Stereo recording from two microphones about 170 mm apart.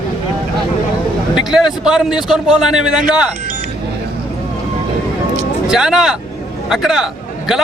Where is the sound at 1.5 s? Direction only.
5° right (ahead or behind).